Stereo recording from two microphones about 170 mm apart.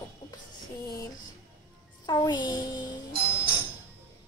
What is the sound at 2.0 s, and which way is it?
Music, 25° left (ahead or behind).